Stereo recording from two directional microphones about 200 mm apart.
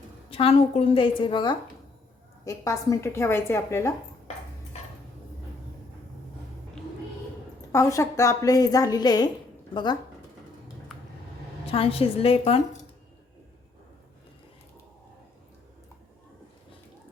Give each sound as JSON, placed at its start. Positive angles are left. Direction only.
{"t": 0.3, "sound": "a woman's voice", "side_deg": 30}
{"t": 7.7, "sound": "a woman's voice", "side_deg": 15}
{"t": 11.7, "sound": "a woman's voice", "side_deg": 30}